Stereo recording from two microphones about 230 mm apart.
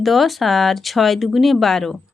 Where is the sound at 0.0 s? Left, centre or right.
Centre.